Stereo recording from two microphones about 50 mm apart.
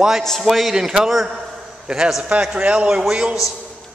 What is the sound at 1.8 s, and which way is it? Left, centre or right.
A man's voice, centre.